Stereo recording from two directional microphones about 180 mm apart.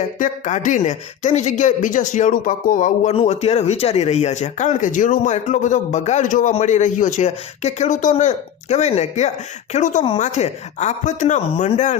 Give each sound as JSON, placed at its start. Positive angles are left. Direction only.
{"t": 0.2, "sound": "speech", "side_deg": 45}